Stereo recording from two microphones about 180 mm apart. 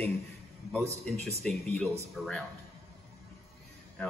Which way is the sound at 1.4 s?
5° left (ahead or behind).